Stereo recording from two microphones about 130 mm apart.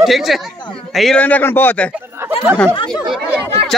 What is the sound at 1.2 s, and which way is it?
Speech, 15° left (ahead or behind).